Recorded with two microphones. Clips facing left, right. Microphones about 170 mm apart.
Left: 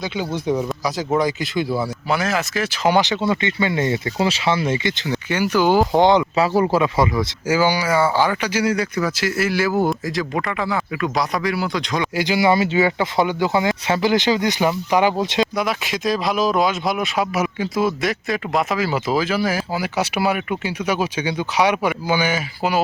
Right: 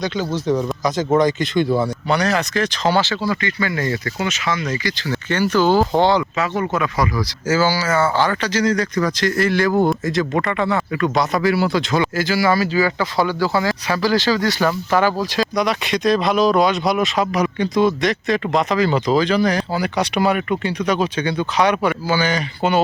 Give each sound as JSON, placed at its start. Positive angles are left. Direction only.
{"t": 0.0, "sound": "speech", "side_deg": 10}
{"t": 6.3, "sound": "speech", "side_deg": 35}
{"t": 7.4, "sound": "speech", "side_deg": 15}
{"t": 12.1, "sound": "speech", "side_deg": 20}
{"t": 15.5, "sound": "speech", "side_deg": 5}